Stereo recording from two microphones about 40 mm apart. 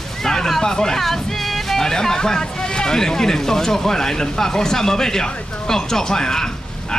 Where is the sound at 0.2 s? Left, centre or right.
Centre.